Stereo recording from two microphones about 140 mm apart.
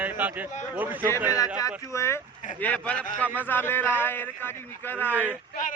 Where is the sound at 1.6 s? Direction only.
20° left (ahead or behind).